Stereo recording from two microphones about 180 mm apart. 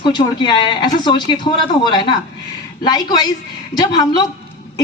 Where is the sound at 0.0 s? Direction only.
25° left (ahead or behind).